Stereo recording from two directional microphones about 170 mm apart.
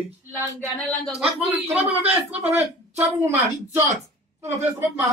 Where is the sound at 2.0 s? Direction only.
10° right (ahead or behind).